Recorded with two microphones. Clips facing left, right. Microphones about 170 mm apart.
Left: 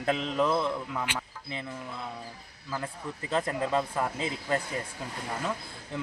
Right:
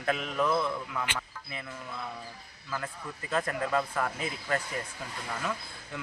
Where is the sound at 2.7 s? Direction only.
25° left (ahead or behind).